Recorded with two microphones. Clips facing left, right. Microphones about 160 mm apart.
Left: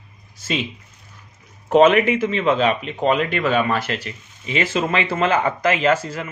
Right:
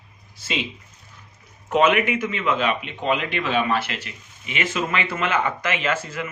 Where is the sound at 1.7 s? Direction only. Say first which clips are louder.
Left 5 dB; 35° left (ahead or behind).